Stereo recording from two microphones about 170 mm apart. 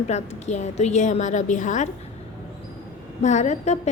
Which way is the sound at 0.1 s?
40° left (ahead or behind).